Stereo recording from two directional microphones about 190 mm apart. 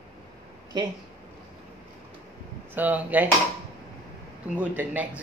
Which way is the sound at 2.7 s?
10° right (ahead or behind).